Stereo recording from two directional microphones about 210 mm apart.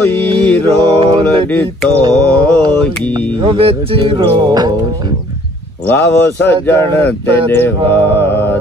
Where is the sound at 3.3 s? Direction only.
25° right (ahead or behind).